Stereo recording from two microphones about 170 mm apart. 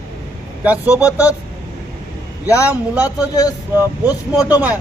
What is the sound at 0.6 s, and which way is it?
Speech, 10° right (ahead or behind).